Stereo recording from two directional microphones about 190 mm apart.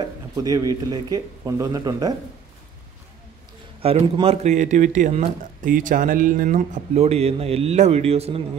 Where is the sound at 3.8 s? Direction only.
30° right (ahead or behind).